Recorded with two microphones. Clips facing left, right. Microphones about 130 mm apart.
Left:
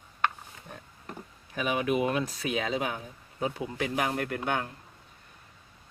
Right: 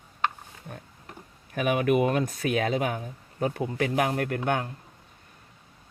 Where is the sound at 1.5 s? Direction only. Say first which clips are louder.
Right 4 dB; 55° right (ahead or behind).